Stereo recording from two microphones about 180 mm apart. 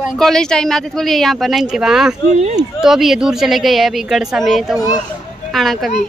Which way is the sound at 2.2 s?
35° right (ahead or behind).